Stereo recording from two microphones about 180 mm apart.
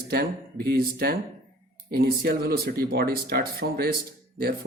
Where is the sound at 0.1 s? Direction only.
60° right (ahead or behind).